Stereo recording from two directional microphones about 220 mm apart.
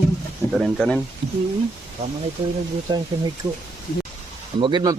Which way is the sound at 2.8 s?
20° right (ahead or behind).